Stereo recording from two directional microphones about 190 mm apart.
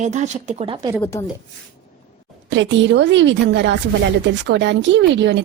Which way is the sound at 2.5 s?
70° right (ahead or behind).